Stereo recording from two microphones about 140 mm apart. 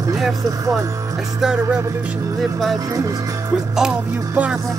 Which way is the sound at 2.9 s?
25° right (ahead or behind).